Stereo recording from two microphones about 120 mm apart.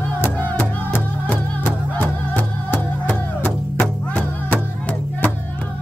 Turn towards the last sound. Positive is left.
turn(degrees=10)  # may be behind; listen again after turning